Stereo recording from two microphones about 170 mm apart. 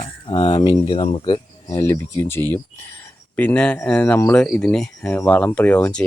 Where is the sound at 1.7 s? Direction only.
20° left (ahead or behind).